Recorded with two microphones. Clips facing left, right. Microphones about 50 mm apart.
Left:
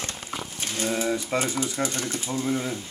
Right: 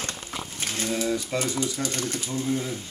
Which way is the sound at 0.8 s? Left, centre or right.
Centre.